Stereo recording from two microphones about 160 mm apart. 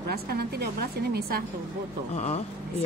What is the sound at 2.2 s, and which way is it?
Speech, 40° left (ahead or behind).